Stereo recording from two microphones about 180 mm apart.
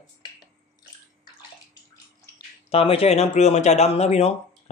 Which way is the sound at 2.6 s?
35° left (ahead or behind).